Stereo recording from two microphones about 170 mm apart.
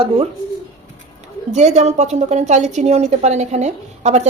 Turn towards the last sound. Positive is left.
turn(degrees=-40)  # may be behind; listen again after turning